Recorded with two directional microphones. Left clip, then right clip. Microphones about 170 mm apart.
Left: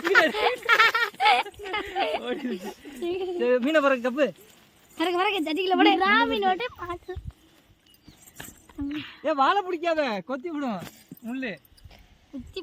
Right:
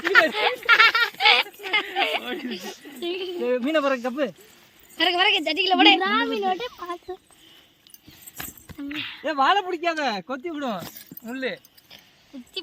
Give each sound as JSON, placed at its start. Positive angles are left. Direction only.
{"t": 0.0, "sound": "a sound", "side_deg": 85}
{"t": 2.0, "sound": "a sound", "side_deg": 25}
{"t": 2.2, "sound": "speech", "side_deg": 80}
{"t": 3.0, "sound": "a woman's voice", "side_deg": 60}
{"t": 3.4, "sound": "speech", "side_deg": 5}
{"t": 4.9, "sound": "a woman's voice", "side_deg": 60}
{"t": 6.0, "sound": "speech", "side_deg": 0}
{"t": 7.1, "sound": "speech", "side_deg": -45}
{"t": 8.9, "sound": "speech", "side_deg": -5}
{"t": 9.2, "sound": "speech", "side_deg": -30}